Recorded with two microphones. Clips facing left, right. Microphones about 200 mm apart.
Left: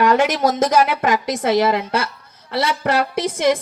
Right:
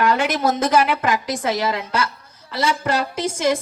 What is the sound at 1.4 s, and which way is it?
A woman's voice, 60° left (ahead or behind).